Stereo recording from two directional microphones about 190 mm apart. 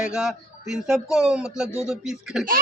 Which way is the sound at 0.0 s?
5° right (ahead or behind).